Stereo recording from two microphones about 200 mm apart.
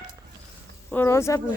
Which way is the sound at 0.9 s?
10° left (ahead or behind).